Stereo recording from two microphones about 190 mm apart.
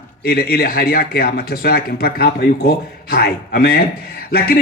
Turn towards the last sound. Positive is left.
turn(degrees=55)  # may be behind; listen again after turning